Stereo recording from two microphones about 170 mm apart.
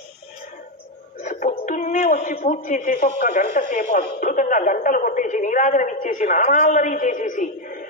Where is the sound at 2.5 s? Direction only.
50° left (ahead or behind).